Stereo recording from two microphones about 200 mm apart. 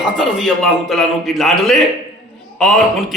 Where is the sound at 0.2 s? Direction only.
Centre (ahead or behind).